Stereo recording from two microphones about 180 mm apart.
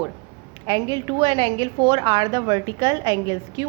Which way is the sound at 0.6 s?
20° right (ahead or behind).